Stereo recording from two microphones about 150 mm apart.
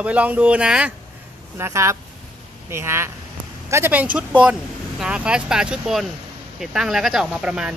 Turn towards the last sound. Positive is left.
turn(degrees=-5)  # may be behind; listen again after turning